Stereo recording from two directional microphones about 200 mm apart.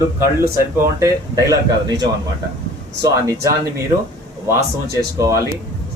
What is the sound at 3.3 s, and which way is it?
Speech, 15° right (ahead or behind).